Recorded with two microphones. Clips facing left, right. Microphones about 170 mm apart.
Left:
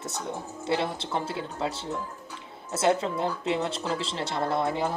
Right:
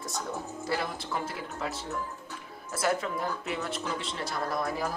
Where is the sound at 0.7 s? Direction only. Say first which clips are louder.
Left 5 dB; 25° left (ahead or behind).